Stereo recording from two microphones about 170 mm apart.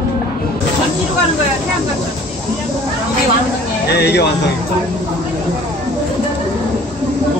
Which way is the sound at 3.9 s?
75° left (ahead or behind).